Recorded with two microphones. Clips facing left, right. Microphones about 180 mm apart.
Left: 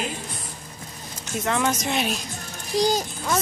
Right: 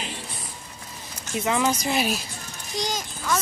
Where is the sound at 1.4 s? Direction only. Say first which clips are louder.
Right 1 dB; 5° right (ahead or behind).